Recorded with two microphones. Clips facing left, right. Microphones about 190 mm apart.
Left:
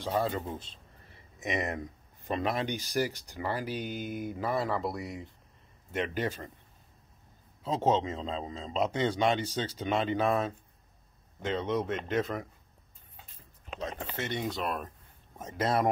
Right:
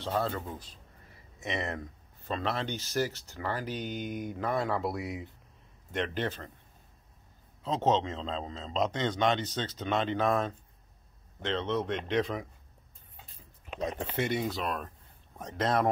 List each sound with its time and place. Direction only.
0.0 s speech: 10° left (ahead or behind)
7.6 s speech: 10° left (ahead or behind)
13.7 s speech: 15° right (ahead or behind)
14.4 s speech: centre (ahead or behind)